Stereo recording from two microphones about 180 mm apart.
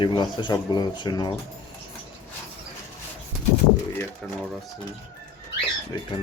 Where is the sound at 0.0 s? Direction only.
25° left (ahead or behind).